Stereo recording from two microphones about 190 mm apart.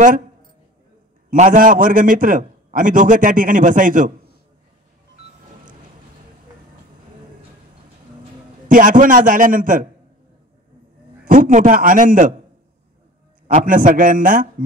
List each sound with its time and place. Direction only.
1.3 s a man's voice: 40° right (ahead or behind)
8.6 s a man's voice: 45° right (ahead or behind)
11.2 s a man's voice: 45° right (ahead or behind)
13.5 s a man's voice: 45° right (ahead or behind)